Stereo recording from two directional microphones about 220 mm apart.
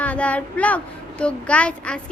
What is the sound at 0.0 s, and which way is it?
A woman's voice, 5° left (ahead or behind).